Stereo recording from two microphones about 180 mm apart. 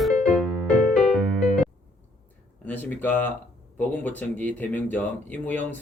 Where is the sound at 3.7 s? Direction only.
10° left (ahead or behind).